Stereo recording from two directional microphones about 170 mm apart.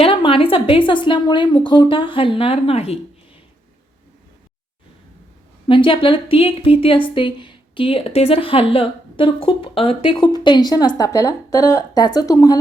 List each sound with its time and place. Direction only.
0.0 s a woman's voice: 30° left (ahead or behind)
5.6 s a woman's voice: 30° left (ahead or behind)